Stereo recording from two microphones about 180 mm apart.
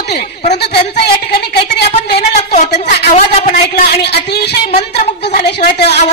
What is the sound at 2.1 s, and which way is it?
A woman's voice, 40° left (ahead or behind).